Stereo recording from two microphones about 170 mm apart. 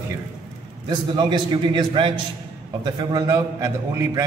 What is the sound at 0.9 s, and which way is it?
A man's voice, 25° right (ahead or behind).